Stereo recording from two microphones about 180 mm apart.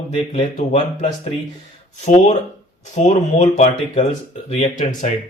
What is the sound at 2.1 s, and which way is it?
Speech, 40° left (ahead or behind).